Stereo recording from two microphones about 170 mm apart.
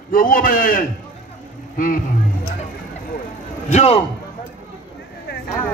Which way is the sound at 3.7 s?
40° left (ahead or behind).